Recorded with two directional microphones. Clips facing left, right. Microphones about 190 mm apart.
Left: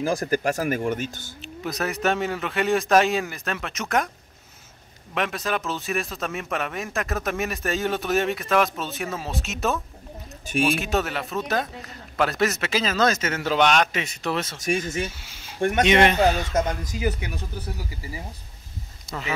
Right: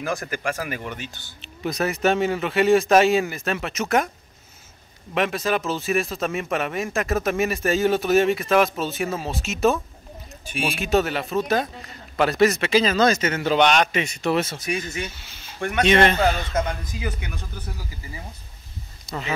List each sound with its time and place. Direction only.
0.0 s speech: 35° left (ahead or behind)
1.4 s speech: centre (ahead or behind)
5.1 s speech: centre (ahead or behind)
14.6 s speech: 50° left (ahead or behind)
15.8 s speech: 15° left (ahead or behind)
16.5 s speech: 40° left (ahead or behind)
19.0 s speech: 5° left (ahead or behind)